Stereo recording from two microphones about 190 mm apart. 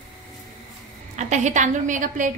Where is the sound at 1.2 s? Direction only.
40° right (ahead or behind).